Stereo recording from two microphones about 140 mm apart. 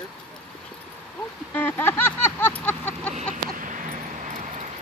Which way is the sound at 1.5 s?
15° left (ahead or behind).